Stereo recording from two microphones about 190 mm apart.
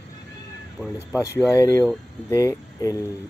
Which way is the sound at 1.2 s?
15° left (ahead or behind).